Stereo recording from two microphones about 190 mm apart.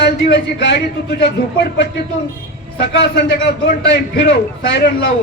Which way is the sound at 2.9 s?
60° left (ahead or behind).